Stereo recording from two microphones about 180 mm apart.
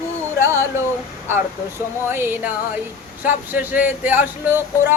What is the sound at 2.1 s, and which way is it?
Speech, 10° right (ahead or behind).